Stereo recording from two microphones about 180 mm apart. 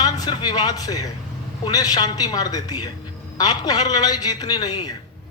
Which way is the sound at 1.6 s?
20° left (ahead or behind).